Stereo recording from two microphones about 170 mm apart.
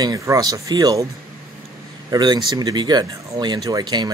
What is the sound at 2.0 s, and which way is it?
Speech, 25° right (ahead or behind).